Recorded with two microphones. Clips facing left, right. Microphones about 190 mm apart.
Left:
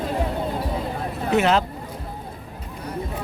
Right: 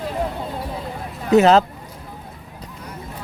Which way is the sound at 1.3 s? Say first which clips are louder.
Right 7 dB; 35° right (ahead or behind).